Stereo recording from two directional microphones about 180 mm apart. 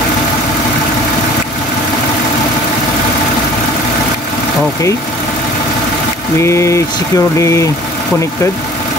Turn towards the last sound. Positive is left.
turn(degrees=15)  # may be behind; listen again after turning